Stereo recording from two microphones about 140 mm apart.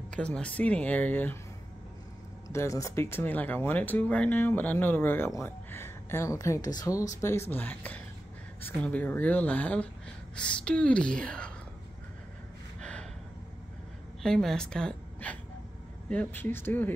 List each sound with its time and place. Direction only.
0.1 s speech: 10° left (ahead or behind)
2.4 s speech: 20° left (ahead or behind)
14.2 s a woman's voice: 5° left (ahead or behind)